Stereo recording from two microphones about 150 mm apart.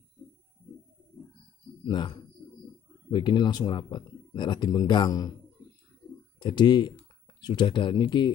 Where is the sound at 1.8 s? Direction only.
30° left (ahead or behind).